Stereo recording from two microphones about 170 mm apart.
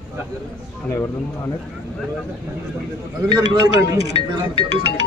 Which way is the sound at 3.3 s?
25° right (ahead or behind).